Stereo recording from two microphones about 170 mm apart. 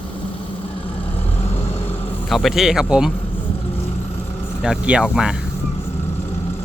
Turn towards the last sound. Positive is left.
turn(degrees=-5)  # may be behind; listen again after turning